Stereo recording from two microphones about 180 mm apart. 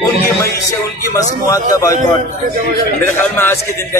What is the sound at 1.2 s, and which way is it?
Speech, 20° left (ahead or behind).